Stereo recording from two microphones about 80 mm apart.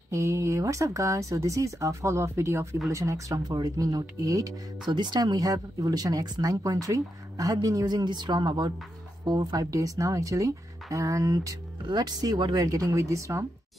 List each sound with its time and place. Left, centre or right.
0.1 s speech: right
4.8 s speech: right
11.9 s speech: right